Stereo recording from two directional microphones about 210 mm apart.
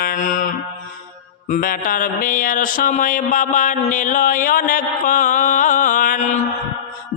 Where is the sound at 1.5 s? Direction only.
40° left (ahead or behind).